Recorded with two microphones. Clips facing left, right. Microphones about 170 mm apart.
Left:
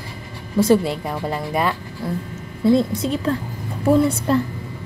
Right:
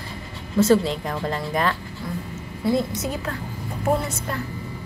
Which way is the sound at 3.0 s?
30° left (ahead or behind).